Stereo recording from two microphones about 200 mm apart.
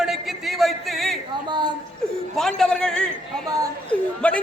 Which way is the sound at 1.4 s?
20° right (ahead or behind).